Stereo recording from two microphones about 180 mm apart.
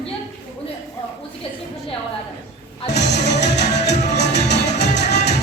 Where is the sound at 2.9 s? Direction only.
70° left (ahead or behind).